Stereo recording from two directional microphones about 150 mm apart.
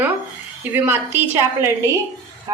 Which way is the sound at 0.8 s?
15° right (ahead or behind).